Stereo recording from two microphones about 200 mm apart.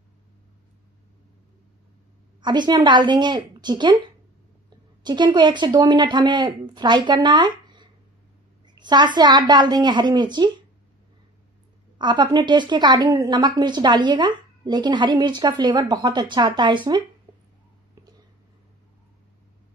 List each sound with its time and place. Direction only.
2.4 s a woman's voice: 20° right (ahead or behind)
12.0 s a woman's voice: 20° right (ahead or behind)